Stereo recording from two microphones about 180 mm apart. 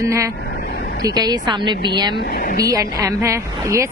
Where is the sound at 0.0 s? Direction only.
15° right (ahead or behind).